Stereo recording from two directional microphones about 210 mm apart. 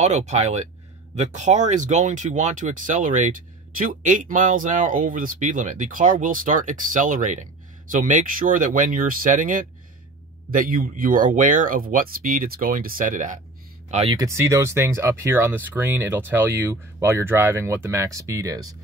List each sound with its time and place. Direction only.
0.0 s speech: 35° right (ahead or behind)
14.1 s speech: 15° right (ahead or behind)